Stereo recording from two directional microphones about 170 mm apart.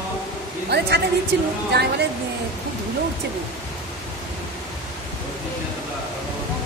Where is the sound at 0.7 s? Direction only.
75° right (ahead or behind).